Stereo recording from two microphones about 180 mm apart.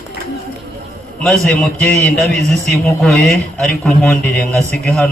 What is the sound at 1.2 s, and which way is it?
A man's voice, 5° left (ahead or behind).